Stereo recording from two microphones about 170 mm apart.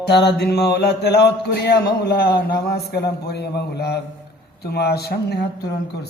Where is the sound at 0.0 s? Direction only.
80° left.